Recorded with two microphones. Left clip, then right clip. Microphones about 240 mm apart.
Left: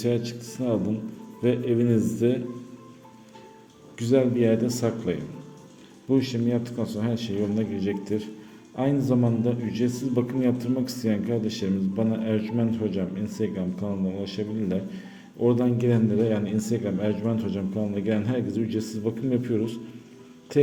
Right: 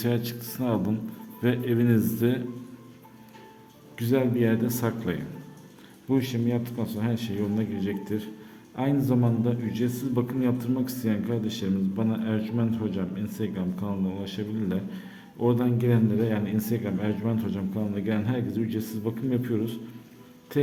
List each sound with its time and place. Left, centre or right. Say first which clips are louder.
0.0 s a man's voice: left 3 dB; centre
3.9 s a man's voice: left 3 dB; centre